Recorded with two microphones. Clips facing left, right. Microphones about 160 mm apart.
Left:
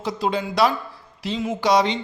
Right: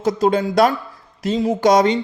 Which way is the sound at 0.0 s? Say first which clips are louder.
Right 7 dB; 45° right (ahead or behind).